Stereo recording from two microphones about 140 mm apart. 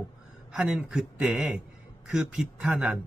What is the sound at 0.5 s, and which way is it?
A man's voice, 5° right (ahead or behind).